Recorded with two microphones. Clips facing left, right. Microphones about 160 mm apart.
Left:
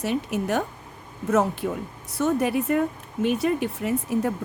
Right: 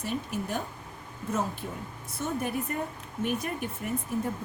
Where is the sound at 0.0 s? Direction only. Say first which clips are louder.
Left 7 dB; 80° left.